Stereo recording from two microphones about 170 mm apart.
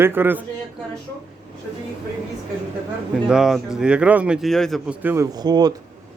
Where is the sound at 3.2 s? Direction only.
5° right (ahead or behind).